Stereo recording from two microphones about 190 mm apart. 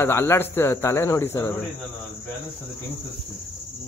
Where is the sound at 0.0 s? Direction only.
10° left (ahead or behind).